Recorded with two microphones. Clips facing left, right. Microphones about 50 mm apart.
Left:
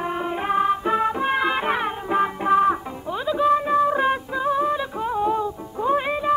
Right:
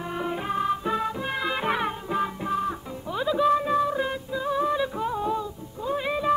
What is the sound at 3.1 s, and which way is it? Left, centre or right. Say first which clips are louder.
Music: left 2 dB; centre.